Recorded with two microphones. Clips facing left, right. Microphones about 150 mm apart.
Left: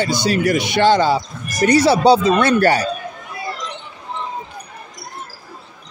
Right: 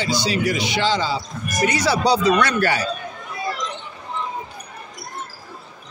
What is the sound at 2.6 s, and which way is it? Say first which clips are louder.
Speech: left 6 dB; 40° left (ahead or behind).